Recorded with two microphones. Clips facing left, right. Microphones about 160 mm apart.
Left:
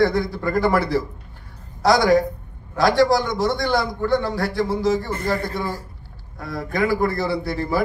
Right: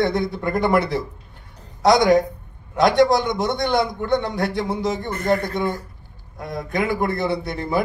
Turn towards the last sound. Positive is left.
turn(degrees=-20)  # may be behind; listen again after turning